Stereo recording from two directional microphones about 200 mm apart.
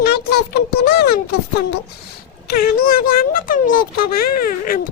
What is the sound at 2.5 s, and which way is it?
Speech, 50° left (ahead or behind).